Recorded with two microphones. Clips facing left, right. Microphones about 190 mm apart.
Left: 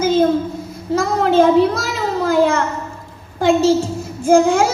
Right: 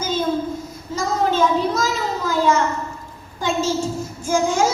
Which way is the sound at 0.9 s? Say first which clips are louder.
Left 6 dB; 55° left (ahead or behind).